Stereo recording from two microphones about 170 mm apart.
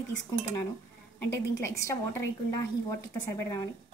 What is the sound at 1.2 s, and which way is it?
A woman's voice, 15° left (ahead or behind).